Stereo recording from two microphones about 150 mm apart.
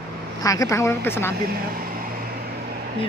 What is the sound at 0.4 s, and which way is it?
Speech, 20° left (ahead or behind).